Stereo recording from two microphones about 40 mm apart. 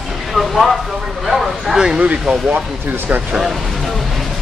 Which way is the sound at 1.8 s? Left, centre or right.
Centre.